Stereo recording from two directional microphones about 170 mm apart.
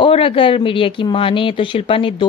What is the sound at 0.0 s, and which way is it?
Speech, 30° left (ahead or behind).